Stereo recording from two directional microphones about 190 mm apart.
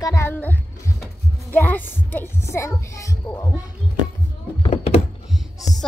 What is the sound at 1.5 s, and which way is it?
Speech, 10° left (ahead or behind).